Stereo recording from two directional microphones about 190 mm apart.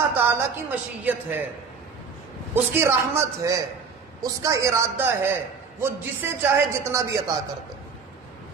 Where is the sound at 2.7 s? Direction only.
15° right (ahead or behind).